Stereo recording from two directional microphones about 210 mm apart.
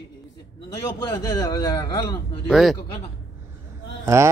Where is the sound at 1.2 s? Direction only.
15° left (ahead or behind).